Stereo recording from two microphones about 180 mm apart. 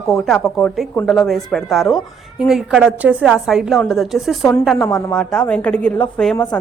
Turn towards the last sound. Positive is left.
turn(degrees=5)  # may be behind; listen again after turning